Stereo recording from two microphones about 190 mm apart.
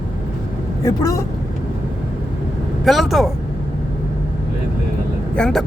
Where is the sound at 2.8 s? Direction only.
Centre (ahead or behind).